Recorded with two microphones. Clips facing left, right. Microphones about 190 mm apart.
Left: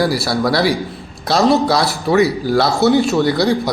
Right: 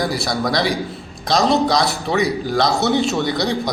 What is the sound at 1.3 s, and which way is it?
Speech, 15° right (ahead or behind).